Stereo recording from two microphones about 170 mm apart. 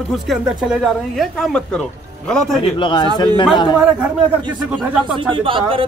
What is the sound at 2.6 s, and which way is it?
Speech, 30° left (ahead or behind).